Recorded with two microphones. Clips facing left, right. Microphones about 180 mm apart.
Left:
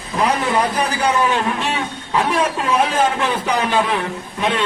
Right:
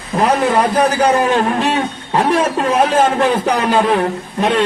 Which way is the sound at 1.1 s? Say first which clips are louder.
Right 4 dB; 40° right (ahead or behind).